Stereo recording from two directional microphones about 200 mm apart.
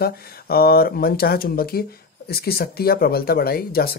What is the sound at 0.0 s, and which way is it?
Speech, 50° left (ahead or behind).